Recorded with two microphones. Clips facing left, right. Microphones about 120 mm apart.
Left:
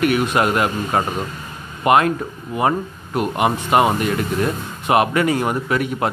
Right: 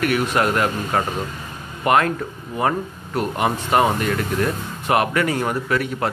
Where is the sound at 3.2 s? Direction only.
15° left (ahead or behind).